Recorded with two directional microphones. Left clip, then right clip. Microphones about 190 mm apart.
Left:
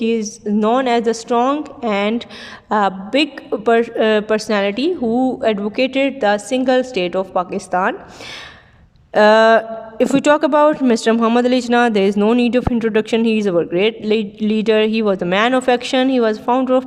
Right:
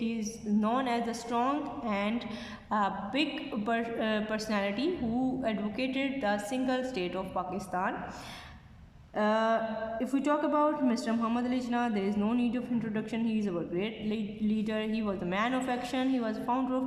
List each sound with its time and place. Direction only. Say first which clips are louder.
0.0 s a woman's voice: left 17 dB; 45° left (ahead or behind)
9.1 s a woman's voice: left 18 dB; 55° left (ahead or behind)